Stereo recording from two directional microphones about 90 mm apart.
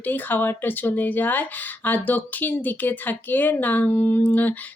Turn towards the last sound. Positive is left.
turn(degrees=20)  # may be behind; listen again after turning